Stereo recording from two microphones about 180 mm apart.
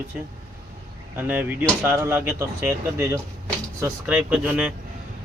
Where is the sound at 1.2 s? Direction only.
10° right (ahead or behind).